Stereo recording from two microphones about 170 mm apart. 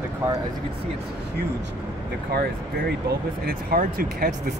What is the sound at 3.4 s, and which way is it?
Speech, 60° right (ahead or behind).